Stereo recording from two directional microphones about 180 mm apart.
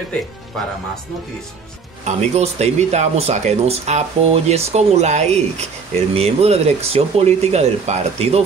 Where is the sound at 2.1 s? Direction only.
35° right (ahead or behind).